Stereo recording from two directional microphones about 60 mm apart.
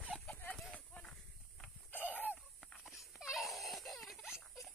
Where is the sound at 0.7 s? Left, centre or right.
Centre.